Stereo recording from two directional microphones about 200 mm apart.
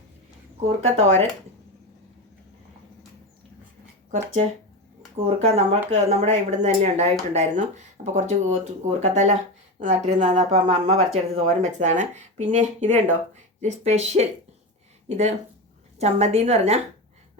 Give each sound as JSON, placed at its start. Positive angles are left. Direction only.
{"t": 0.9, "sound": "speech", "side_deg": -35}
{"t": 5.2, "sound": "speech", "side_deg": -30}